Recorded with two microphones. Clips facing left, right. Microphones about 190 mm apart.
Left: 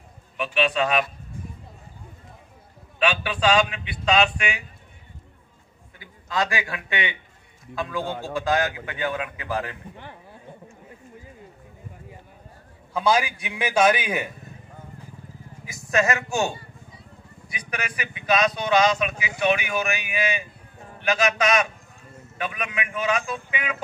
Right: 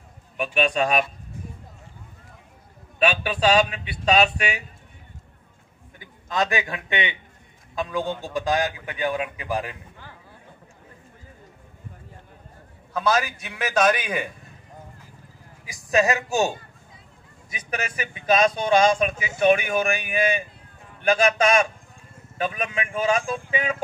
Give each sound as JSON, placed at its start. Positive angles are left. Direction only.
{"t": 0.4, "sound": "speech", "side_deg": -45}
{"t": 3.0, "sound": "a man's voice", "side_deg": -40}
{"t": 5.9, "sound": "a man's voice", "side_deg": -20}
{"t": 12.9, "sound": "a man's voice", "side_deg": 10}
{"t": 15.7, "sound": "speech", "side_deg": -15}
{"t": 16.3, "sound": "a man's voice", "side_deg": -35}
{"t": 21.3, "sound": "speech", "side_deg": -30}